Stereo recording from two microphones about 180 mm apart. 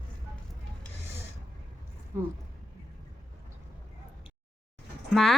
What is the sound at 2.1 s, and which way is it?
Speech, 15° right (ahead or behind).